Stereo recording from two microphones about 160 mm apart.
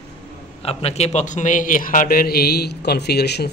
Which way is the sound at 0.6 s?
40° left (ahead or behind).